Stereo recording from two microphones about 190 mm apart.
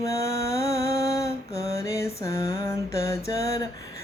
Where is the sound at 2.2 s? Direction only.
15° left (ahead or behind).